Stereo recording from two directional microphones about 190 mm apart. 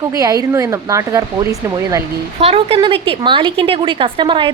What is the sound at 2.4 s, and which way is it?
A woman's voice, 30° right (ahead or behind).